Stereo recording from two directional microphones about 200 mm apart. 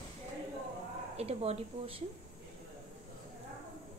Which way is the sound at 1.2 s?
30° right (ahead or behind).